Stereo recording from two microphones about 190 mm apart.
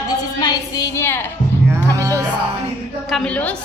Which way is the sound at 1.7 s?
15° right (ahead or behind).